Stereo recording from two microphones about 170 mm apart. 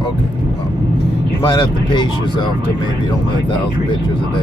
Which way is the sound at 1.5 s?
30° left (ahead or behind).